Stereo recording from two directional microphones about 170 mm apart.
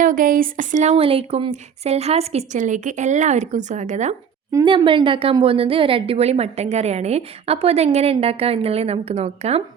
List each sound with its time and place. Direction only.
0.0 s speech: 50° right (ahead or behind)
4.6 s a woman's voice: 30° right (ahead or behind)